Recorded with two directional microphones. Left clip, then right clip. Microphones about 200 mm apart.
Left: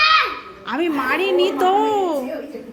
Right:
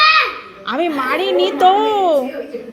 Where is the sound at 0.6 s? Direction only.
10° left (ahead or behind).